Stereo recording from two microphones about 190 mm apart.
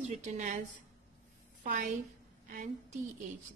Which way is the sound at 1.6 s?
45° right (ahead or behind).